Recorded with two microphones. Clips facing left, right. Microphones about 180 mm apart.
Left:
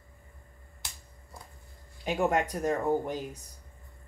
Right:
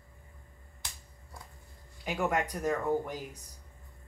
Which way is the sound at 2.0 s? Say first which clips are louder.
Left 4 dB; 25° left (ahead or behind).